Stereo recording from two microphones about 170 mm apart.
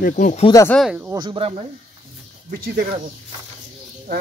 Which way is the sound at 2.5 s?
60° right (ahead or behind).